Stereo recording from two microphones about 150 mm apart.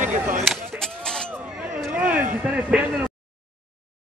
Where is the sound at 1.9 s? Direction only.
10° right (ahead or behind).